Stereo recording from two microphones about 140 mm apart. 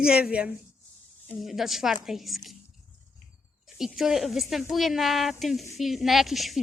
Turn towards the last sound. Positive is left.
turn(degrees=0)  # may be behind; listen again after turning